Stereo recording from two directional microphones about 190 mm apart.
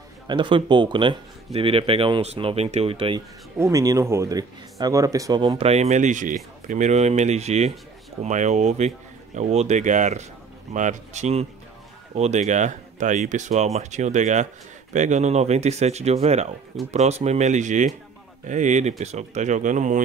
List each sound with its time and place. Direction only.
0.3 s speech: 25° right (ahead or behind)
3.5 s speech: 15° right (ahead or behind); by 20.0 s 40° right (ahead or behind)